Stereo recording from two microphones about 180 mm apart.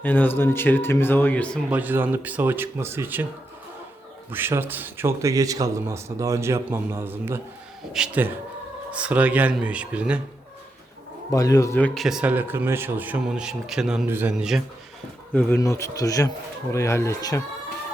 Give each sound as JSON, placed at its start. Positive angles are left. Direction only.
{"t": 0.0, "sound": "a man's voice", "side_deg": 10}
{"t": 1.7, "sound": "speech", "side_deg": -10}
{"t": 4.3, "sound": "speech", "side_deg": -10}
{"t": 11.3, "sound": "a man's voice", "side_deg": 20}
{"t": 11.9, "sound": "speech", "side_deg": -5}
{"t": 15.3, "sound": "a man's voice", "side_deg": 10}